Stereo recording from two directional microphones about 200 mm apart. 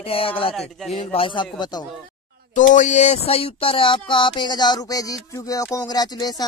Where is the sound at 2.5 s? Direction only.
40° left (ahead or behind).